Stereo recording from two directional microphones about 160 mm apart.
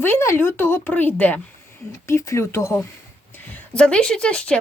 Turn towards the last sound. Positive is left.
turn(degrees=5)  # may be behind; listen again after turning